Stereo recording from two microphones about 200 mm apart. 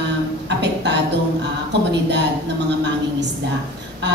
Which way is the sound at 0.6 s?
60° right (ahead or behind).